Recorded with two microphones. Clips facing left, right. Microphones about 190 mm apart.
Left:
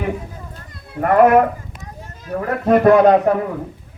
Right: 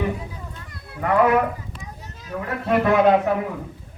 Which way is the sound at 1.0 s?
45° left (ahead or behind).